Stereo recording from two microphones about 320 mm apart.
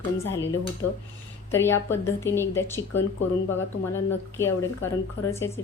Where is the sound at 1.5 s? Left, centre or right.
Centre.